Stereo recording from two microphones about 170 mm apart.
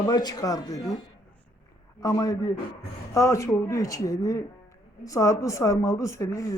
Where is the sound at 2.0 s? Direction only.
20° left (ahead or behind).